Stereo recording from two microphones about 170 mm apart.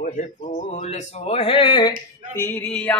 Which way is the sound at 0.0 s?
40° left (ahead or behind).